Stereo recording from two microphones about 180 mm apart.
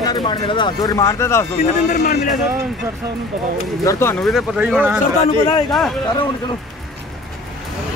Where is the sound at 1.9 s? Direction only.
45° left (ahead or behind).